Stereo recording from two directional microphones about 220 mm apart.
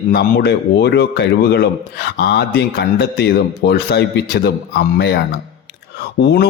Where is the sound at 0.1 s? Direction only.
50° left (ahead or behind).